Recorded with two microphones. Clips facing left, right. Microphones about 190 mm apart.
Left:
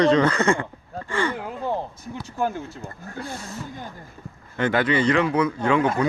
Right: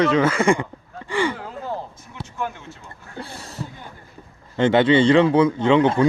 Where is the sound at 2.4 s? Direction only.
35° left (ahead or behind).